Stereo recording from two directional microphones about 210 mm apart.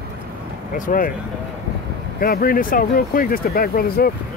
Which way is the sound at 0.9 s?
40° left (ahead or behind).